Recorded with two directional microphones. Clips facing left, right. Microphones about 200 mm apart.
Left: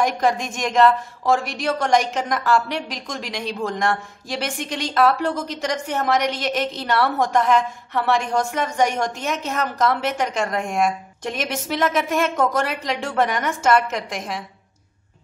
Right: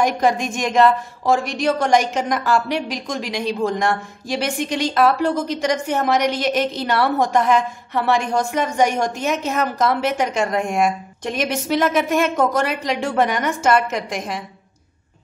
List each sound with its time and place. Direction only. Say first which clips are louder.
0.0 s a woman's voice: right 2 dB; centre (ahead or behind)